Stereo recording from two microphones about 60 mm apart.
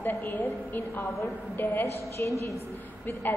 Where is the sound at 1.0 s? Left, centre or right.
Left.